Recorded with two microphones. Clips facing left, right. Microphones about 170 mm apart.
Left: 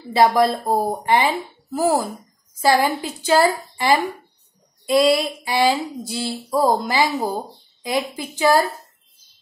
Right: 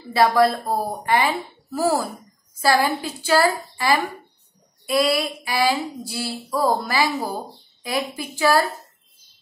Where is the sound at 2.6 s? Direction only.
15° left (ahead or behind).